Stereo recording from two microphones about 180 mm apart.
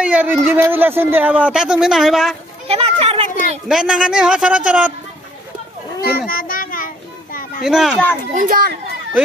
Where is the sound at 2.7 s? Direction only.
35° right (ahead or behind).